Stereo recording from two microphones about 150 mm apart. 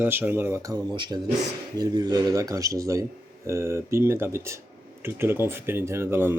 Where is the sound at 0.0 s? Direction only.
15° right (ahead or behind).